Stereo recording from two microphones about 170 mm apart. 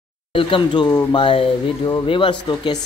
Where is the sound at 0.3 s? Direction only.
30° left (ahead or behind).